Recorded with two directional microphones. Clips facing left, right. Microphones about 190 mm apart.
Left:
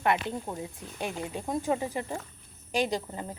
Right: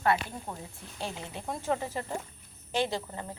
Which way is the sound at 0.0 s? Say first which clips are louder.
Left 1 dB; 20° left (ahead or behind).